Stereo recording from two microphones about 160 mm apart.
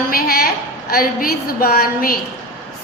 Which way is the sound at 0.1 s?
70° left (ahead or behind).